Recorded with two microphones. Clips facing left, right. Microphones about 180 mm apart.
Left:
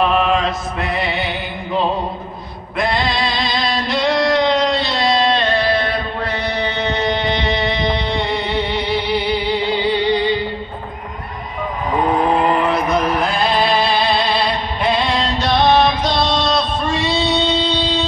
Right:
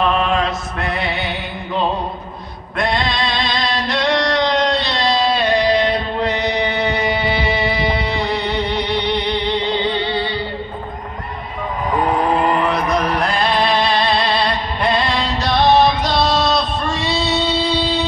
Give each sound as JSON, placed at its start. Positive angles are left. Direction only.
{"t": 0.0, "sound": "chant", "side_deg": 0}
{"t": 2.8, "sound": "music", "side_deg": 0}
{"t": 5.5, "sound": "chant", "side_deg": -15}
{"t": 12.5, "sound": "chant", "side_deg": 0}